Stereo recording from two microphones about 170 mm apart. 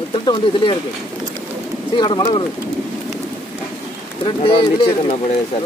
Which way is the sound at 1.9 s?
25° left (ahead or behind).